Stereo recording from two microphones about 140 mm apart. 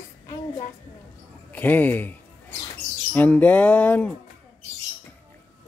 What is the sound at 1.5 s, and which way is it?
Speech, 10° left (ahead or behind).